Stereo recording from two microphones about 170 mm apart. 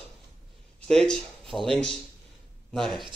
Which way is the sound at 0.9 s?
5° left (ahead or behind).